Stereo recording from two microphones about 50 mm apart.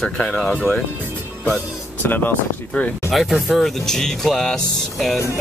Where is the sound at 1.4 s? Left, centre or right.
Left.